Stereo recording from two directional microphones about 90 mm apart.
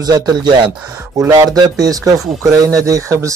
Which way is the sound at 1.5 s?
45° right (ahead or behind).